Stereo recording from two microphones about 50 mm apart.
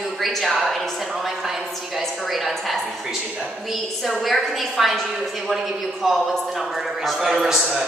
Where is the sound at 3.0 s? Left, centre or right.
Centre.